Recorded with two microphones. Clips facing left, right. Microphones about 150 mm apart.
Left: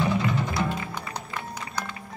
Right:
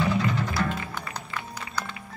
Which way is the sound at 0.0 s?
10° left (ahead or behind).